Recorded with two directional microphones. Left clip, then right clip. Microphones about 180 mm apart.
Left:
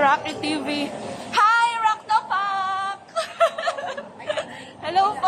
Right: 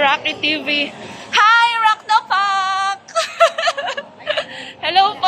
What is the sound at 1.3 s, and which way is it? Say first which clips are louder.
Female singing: right 6 dB; 10° right (ahead or behind).